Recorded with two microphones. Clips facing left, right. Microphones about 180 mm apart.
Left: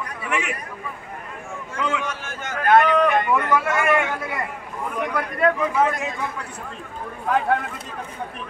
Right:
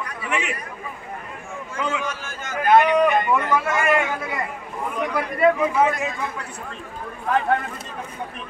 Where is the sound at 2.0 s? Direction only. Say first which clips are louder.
Even; 65° left (ahead or behind).